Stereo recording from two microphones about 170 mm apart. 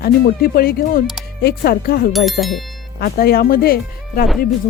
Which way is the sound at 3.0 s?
65° left (ahead or behind).